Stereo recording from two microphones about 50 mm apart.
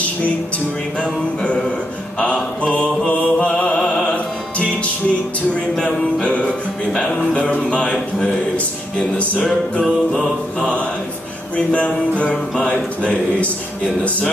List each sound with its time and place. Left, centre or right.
2.1 s a sound: left
3.1 s music: left
5.5 s a sound: centre
8.9 s music: left
10.1 s mantra: centre
11.5 s music: left